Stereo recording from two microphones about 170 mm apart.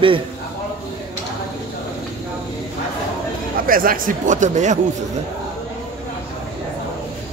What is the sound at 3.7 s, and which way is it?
A man's voice, 55° right (ahead or behind).